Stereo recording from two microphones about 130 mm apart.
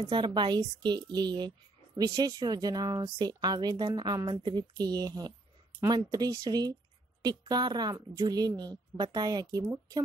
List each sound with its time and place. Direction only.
0.1 s a woman's voice: 35° right (ahead or behind)